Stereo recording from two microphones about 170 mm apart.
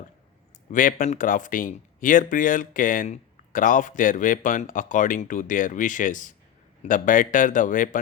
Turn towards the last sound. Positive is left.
turn(degrees=50)  # may be behind; listen again after turning